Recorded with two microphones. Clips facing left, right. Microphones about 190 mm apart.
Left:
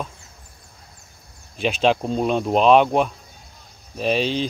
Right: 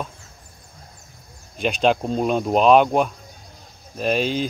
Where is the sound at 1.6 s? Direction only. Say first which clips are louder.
Even; centre (ahead or behind).